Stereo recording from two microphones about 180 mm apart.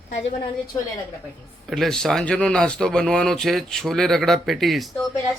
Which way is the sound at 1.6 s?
Centre (ahead or behind).